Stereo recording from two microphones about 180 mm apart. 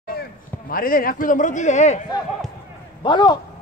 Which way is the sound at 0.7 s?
50° left (ahead or behind).